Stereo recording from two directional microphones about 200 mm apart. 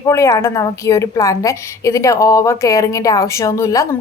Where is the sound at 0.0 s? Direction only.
15° left (ahead or behind).